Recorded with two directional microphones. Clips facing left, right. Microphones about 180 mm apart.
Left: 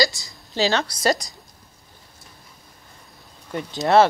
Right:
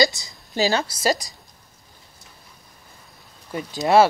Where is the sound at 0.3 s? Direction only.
5° right (ahead or behind).